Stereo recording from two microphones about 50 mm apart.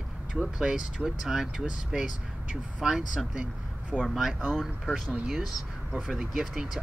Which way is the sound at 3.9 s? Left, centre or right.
Centre.